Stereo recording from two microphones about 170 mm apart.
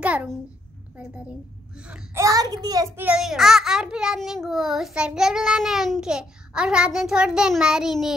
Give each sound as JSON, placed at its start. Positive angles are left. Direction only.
{"t": 0.0, "sound": "a child's voice", "side_deg": -5}
{"t": 2.1, "sound": "a child's voice", "side_deg": -20}
{"t": 3.0, "sound": "a child's voice", "side_deg": -5}